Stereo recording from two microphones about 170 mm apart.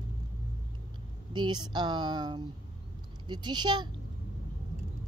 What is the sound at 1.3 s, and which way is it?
Speech, 25° right (ahead or behind).